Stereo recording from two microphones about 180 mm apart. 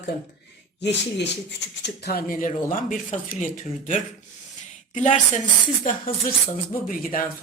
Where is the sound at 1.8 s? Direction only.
60° left (ahead or behind).